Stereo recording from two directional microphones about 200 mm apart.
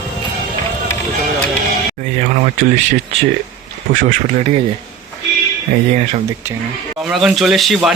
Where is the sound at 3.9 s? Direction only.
40° right (ahead or behind).